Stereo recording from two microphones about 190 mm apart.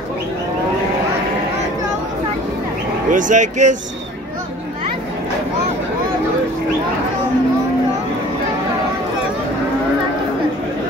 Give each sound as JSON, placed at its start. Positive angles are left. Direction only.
{"t": 3.1, "sound": "speech", "side_deg": -40}